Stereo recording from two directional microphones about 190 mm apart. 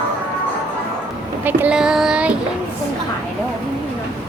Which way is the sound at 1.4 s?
10° right (ahead or behind).